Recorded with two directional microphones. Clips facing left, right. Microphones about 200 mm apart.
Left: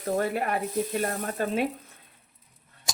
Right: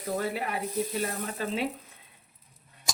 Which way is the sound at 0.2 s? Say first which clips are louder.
Left 4 dB; 50° left (ahead or behind).